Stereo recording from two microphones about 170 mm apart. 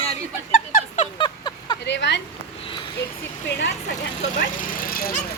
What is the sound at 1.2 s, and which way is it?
Vehicle, 25° left (ahead or behind).